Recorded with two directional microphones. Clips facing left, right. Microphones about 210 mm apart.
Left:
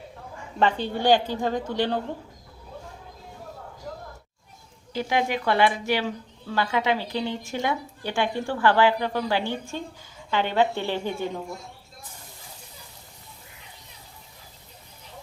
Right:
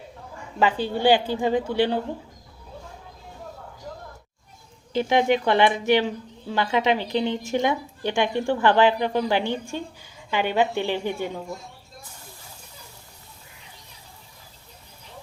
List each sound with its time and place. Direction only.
0.6 s a woman's voice: 5° right (ahead or behind)
4.9 s a woman's voice: 25° right (ahead or behind)